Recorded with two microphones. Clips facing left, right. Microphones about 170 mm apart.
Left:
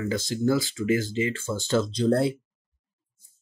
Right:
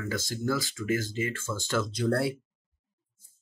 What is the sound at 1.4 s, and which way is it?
Speech, 25° left (ahead or behind).